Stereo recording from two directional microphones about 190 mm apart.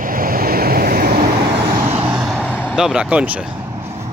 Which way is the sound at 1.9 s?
5° right (ahead or behind).